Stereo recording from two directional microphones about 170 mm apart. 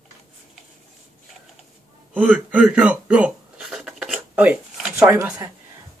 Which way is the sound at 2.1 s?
10° right (ahead or behind).